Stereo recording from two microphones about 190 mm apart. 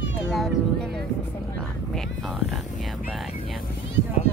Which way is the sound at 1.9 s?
Centre (ahead or behind).